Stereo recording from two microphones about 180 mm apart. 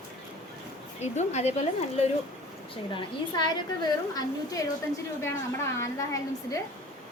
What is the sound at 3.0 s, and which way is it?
A woman's voice, 25° left (ahead or behind).